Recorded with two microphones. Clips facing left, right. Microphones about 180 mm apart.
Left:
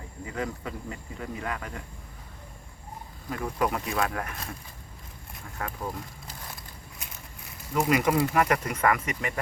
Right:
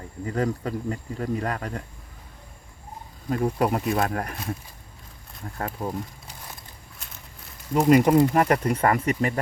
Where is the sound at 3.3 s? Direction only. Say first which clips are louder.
Right 5 dB; 35° right (ahead or behind).